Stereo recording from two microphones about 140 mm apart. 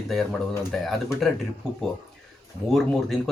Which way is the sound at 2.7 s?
Centre (ahead or behind).